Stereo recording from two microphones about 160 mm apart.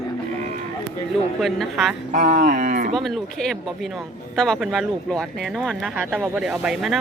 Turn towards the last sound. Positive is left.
turn(degrees=0)  # may be behind; listen again after turning